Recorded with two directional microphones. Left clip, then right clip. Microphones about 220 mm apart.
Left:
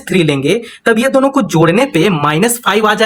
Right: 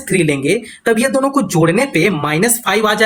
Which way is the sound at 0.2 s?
30° left (ahead or behind).